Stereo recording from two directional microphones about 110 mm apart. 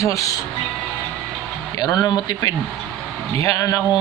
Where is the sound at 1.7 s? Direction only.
35° left (ahead or behind).